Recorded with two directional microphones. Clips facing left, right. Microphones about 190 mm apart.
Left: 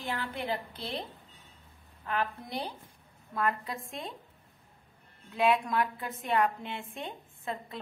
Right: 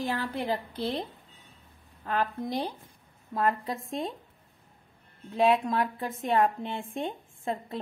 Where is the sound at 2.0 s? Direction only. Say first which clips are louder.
Right 4 dB; 35° right (ahead or behind).